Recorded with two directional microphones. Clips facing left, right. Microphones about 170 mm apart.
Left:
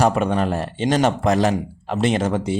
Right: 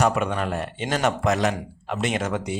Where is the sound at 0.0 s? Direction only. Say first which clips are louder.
Left 4 dB; 35° left (ahead or behind).